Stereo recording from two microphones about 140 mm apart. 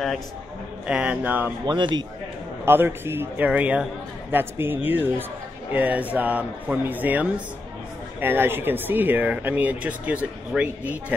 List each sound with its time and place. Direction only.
0.8 s speech: 10° right (ahead or behind)
1.7 s speech: 35° right (ahead or behind)
2.6 s speech: 15° right (ahead or behind)